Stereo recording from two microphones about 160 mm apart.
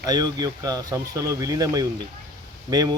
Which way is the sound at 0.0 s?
25° right (ahead or behind).